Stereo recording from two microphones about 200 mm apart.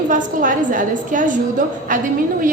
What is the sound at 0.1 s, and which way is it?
A woman's voice, 40° right (ahead or behind).